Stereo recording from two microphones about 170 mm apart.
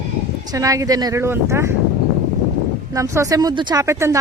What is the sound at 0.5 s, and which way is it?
Speech, 20° right (ahead or behind).